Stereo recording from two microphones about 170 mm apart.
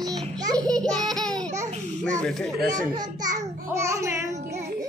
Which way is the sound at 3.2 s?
45° right (ahead or behind).